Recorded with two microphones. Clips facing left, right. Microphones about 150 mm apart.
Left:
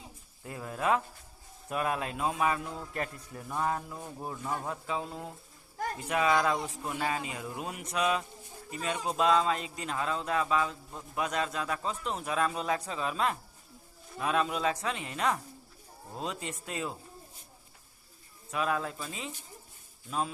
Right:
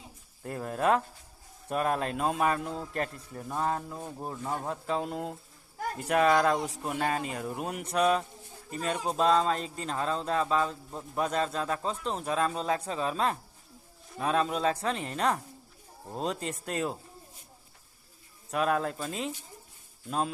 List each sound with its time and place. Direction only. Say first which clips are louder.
0.4 s speech: right 3 dB; 50° right (ahead or behind)
2.7 s speech: right 3 dB; 40° right (ahead or behind)
4.7 s speech: right 4 dB; 50° right (ahead or behind)
7.9 s speech: right 4 dB; 35° right (ahead or behind)
18.5 s speech: right 4 dB; 50° right (ahead or behind)